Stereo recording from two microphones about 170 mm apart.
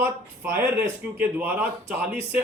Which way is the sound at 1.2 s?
10° right (ahead or behind).